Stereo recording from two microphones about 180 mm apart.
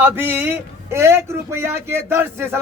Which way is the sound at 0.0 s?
10° right (ahead or behind).